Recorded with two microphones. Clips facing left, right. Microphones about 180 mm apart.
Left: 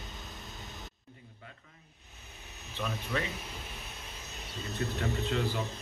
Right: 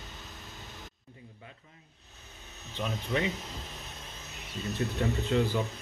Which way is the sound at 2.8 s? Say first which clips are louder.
Right 3 dB; 20° right (ahead or behind).